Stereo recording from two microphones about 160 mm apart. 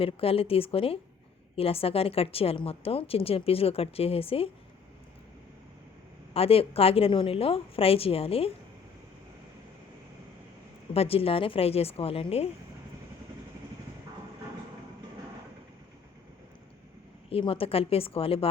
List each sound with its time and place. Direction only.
0.0 s a woman's voice: 35° left (ahead or behind)
6.3 s a woman's voice: 35° left (ahead or behind)
10.9 s a woman's voice: 35° left (ahead or behind)
17.2 s a woman's voice: 35° left (ahead or behind)